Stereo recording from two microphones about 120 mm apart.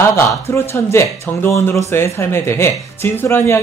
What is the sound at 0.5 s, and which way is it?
Speech, 20° left (ahead or behind).